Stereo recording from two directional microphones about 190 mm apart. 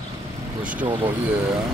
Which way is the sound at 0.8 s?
25° right (ahead or behind).